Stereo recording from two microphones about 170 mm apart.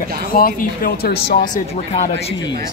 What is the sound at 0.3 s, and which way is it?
Speech, 60° left (ahead or behind).